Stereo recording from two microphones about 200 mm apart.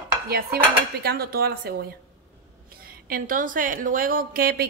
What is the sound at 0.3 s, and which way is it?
A woman's voice, 50° right (ahead or behind).